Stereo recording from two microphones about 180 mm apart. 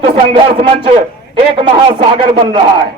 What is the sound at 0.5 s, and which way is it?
A man's voice, 30° right (ahead or behind).